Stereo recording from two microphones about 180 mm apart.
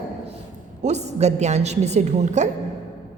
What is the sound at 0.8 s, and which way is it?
A woman's voice, 40° right (ahead or behind).